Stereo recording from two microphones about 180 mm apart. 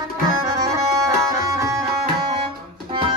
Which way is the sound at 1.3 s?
15° right (ahead or behind).